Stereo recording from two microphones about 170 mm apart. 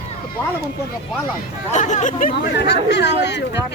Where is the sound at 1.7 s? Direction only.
45° left (ahead or behind).